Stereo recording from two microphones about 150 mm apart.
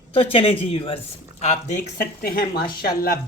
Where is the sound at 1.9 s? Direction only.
80° left.